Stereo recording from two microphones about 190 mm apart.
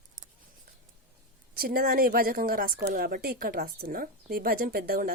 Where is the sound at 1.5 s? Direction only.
50° right (ahead or behind).